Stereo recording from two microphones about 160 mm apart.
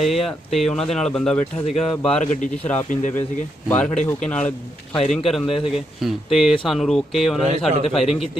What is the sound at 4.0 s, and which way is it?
Speech, 5° left (ahead or behind).